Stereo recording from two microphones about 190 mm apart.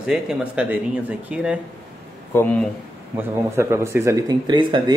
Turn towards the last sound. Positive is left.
turn(degrees=-25)  # may be behind; listen again after turning